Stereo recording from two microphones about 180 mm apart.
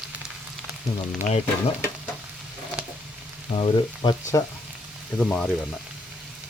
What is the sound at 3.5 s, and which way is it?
Speech, 35° left (ahead or behind).